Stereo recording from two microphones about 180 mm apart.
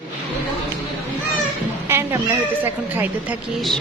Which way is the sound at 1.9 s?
15° right (ahead or behind).